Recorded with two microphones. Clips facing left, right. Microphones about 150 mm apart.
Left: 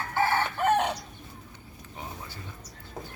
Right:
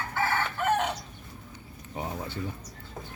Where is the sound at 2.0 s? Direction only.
25° right (ahead or behind).